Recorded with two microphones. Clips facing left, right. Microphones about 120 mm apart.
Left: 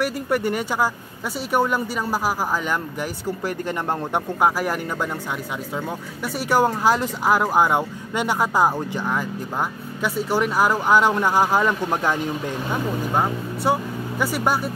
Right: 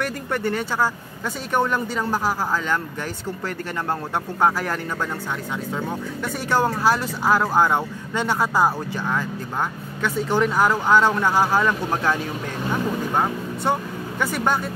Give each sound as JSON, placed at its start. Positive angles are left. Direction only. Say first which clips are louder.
{"t": 0.0, "sound": "speech", "louder": "left 3 dB", "side_deg": 10}
{"t": 5.8, "sound": "speech", "louder": "right 1 dB", "side_deg": 10}
{"t": 13.1, "sound": "speech", "louder": "even", "side_deg": 5}